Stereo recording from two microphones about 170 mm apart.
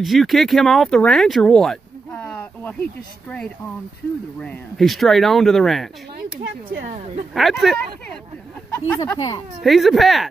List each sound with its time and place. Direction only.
0.0 s speech: centre (ahead or behind)
6.4 s speech: 90° right
7.3 s speech: centre (ahead or behind)
8.6 s speech: 15° left (ahead or behind)
9.6 s speech: centre (ahead or behind)